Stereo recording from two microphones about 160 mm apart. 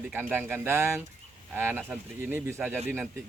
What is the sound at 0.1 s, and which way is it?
Speech, 10° right (ahead or behind).